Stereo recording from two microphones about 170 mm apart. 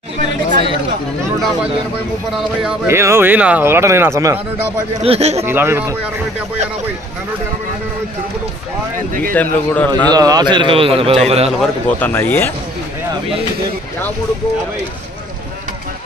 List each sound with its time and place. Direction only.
2.9 s speech: 15° right (ahead or behind)
5.0 s a man's voice: 35° right (ahead or behind)
5.4 s speech: 15° right (ahead or behind)
9.3 s speech: 10° left (ahead or behind)
10.0 s a man's voice: 20° right (ahead or behind)
11.6 s speech: 10° left (ahead or behind)